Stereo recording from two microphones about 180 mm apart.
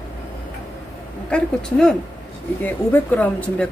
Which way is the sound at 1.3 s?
5° left (ahead or behind).